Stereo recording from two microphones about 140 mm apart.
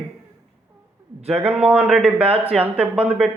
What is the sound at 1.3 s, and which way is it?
Speech, 10° right (ahead or behind).